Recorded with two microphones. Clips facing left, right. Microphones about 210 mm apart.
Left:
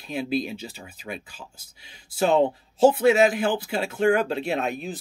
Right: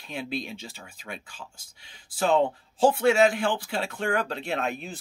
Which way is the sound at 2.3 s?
20° left (ahead or behind).